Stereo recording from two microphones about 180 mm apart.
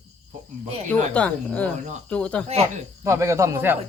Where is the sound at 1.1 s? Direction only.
5° left (ahead or behind).